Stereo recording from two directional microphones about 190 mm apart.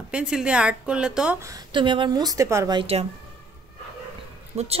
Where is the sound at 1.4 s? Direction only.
20° right (ahead or behind).